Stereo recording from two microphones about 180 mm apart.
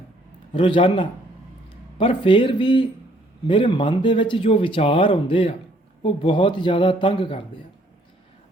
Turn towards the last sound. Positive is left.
turn(degrees=30)  # may be behind; listen again after turning